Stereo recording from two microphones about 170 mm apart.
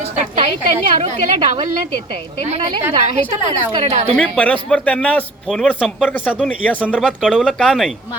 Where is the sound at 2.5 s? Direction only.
35° right (ahead or behind).